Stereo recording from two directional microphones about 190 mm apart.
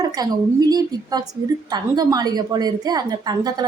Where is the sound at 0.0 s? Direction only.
20° right (ahead or behind).